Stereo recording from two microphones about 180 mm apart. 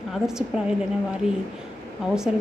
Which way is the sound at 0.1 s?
5° right (ahead or behind).